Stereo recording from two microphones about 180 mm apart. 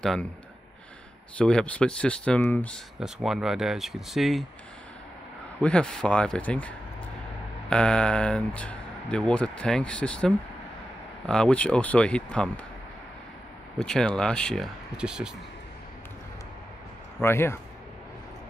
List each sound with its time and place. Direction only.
0.0 s speech: 5° left (ahead or behind)
1.4 s speech: 5° left (ahead or behind)
3.0 s speech: 5° right (ahead or behind)
5.6 s speech: 5° left (ahead or behind)
7.7 s speech: 5° left (ahead or behind)
13.7 s speech: 5° left (ahead or behind)
17.2 s speech: 15° left (ahead or behind)